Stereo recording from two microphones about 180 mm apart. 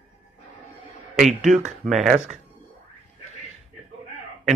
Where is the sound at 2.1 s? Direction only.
40° right (ahead or behind).